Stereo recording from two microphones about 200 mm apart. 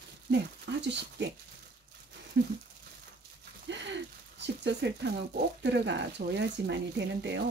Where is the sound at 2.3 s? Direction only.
60° right (ahead or behind).